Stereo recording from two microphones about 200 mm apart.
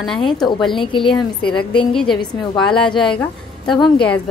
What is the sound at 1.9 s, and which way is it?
Speech, 5° left (ahead or behind).